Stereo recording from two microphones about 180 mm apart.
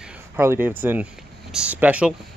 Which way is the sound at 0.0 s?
10° right (ahead or behind).